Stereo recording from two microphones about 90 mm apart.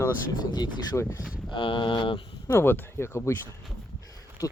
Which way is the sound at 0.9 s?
25° left (ahead or behind).